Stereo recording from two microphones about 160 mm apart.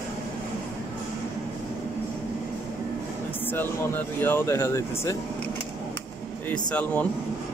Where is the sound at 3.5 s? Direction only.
10° left (ahead or behind).